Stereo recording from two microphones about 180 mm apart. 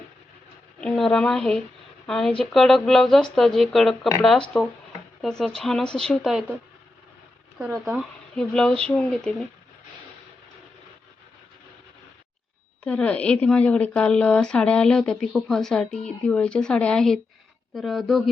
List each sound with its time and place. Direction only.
0.8 s a woman's voice: 5° left (ahead or behind)
7.9 s a woman's voice: 5° left (ahead or behind)
12.8 s a woman's voice: 5° left (ahead or behind)